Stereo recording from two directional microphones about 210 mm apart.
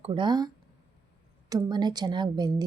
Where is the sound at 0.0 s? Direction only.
25° right (ahead or behind).